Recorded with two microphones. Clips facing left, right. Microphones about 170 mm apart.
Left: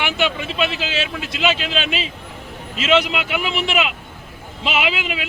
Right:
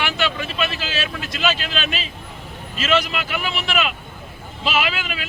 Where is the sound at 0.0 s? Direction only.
15° left (ahead or behind).